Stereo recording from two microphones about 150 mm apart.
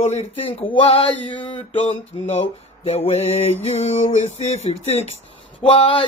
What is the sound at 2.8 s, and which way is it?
Mantra, 40° left (ahead or behind).